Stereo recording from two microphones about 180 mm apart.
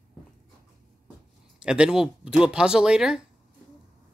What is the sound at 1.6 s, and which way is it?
Speech, 5° right (ahead or behind).